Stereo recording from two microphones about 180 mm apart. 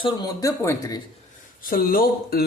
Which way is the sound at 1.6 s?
55° left (ahead or behind).